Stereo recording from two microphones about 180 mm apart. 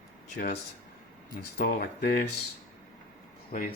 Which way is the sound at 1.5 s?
55° left (ahead or behind).